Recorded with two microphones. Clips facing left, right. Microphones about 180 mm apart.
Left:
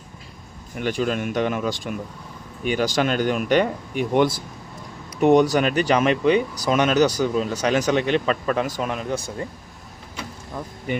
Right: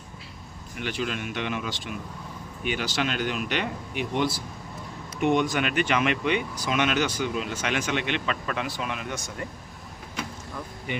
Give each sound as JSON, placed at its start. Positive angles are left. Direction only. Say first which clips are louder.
{"t": 0.8, "sound": "speech", "louder": "left 7 dB", "side_deg": 45}
{"t": 5.2, "sound": "speech", "louder": "left 7 dB", "side_deg": 40}